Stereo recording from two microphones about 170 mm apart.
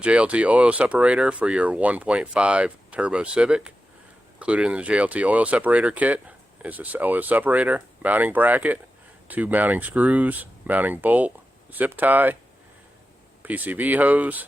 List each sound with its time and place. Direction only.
0.0 s speech: 5° right (ahead or behind)
13.4 s speech: 10° right (ahead or behind)